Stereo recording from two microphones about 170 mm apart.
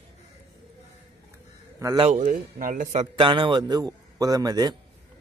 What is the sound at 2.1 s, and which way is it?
Speech, 50° right (ahead or behind).